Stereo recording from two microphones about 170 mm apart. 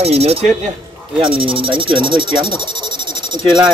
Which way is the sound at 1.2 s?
30° right (ahead or behind).